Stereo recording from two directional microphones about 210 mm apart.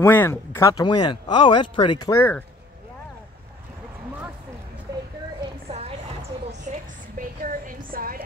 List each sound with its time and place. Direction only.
0.0 s speech: 10° left (ahead or behind)
2.0 s speech: 10° left (ahead or behind)
5.7 s clip-clop: 30° right (ahead or behind)
6.7 s a sound: 35° right (ahead or behind)